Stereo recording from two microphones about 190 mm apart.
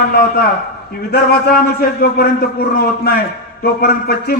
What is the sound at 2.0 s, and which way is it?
A man's voice, 55° left (ahead or behind).